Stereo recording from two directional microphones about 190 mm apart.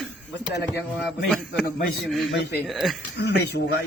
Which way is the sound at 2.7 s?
Centre (ahead or behind).